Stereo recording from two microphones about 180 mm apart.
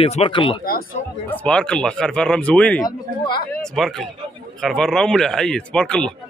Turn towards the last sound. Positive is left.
turn(degrees=5)  # may be behind; listen again after turning